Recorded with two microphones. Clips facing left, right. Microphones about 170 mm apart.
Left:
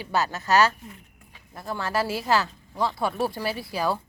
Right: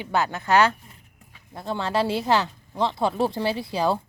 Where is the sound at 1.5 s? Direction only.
25° right (ahead or behind).